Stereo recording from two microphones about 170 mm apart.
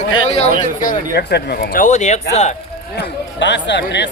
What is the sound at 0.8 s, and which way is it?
Speech, 50° left (ahead or behind).